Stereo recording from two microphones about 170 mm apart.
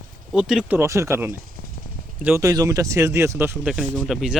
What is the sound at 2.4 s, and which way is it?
Speech, 20° right (ahead or behind).